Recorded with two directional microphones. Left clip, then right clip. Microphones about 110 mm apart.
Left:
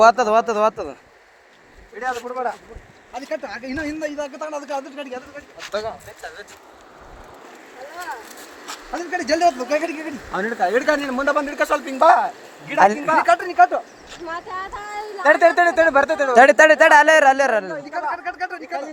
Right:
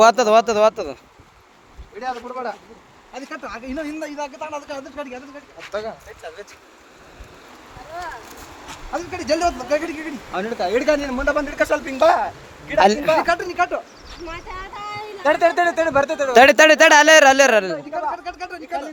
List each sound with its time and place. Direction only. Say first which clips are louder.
0.0 s speech: right 1 dB; 55° right (ahead or behind)
2.0 s speech: left 2 dB; centre (ahead or behind)
3.2 s speech: left 3 dB; 25° right (ahead or behind)
4.2 s speech: left 1 dB; 10° left (ahead or behind)
8.9 s speech: even; 30° right (ahead or behind); by 11.2 s centre (ahead or behind)
11.3 s speech: even; 10° left (ahead or behind); by 13.8 s 5° right (ahead or behind)
15.2 s speech: left 3 dB; 15° left (ahead or behind)
16.4 s a man's voice: right 1 dB; 75° right (ahead or behind)
17.7 s speech: right 1 dB; 10° right (ahead or behind)